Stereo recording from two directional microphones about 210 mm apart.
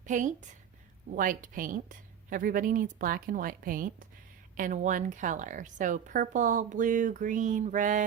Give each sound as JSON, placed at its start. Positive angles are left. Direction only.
{"t": 0.0, "sound": "a woman's voice", "side_deg": -35}